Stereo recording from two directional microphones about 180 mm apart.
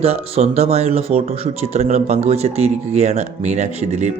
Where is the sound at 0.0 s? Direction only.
35° right (ahead or behind).